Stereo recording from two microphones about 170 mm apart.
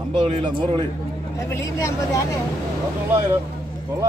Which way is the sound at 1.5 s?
15° left (ahead or behind).